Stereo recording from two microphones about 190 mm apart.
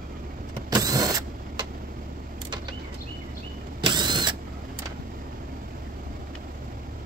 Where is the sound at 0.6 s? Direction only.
20° right (ahead or behind).